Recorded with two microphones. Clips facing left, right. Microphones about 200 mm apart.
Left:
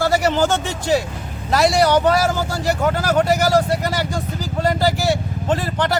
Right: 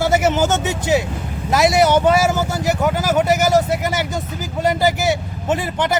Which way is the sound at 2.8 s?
5° right (ahead or behind).